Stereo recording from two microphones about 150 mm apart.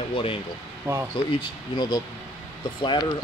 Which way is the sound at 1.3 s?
30° left (ahead or behind).